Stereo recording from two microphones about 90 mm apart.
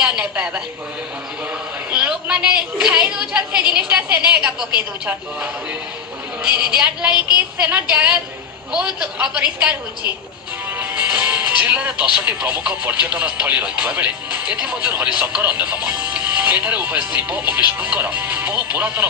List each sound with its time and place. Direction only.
0.0 s a woman's voice: 10° right (ahead or behind)
1.9 s a sound: 10° right (ahead or behind)
3.5 s a woman's voice: 55° left (ahead or behind)
3.8 s a woman's voice: 15° right (ahead or behind)
6.4 s a woman's voice: 10° right (ahead or behind)
7.1 s a woman's voice: 55° left (ahead or behind)
7.3 s a woman's voice: 15° right (ahead or behind)
10.8 s a woman's voice: 15° right (ahead or behind)